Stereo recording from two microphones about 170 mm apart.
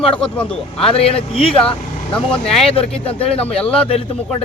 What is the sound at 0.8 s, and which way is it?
Speech, 35° left (ahead or behind).